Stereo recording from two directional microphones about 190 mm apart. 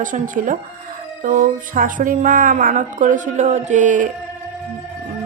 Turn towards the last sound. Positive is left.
turn(degrees=-40)  # may be behind; listen again after turning